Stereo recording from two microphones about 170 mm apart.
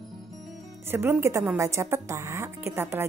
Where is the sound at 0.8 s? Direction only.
10° right (ahead or behind).